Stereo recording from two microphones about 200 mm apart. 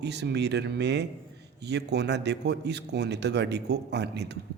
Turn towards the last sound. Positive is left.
turn(degrees=-55)  # may be behind; listen again after turning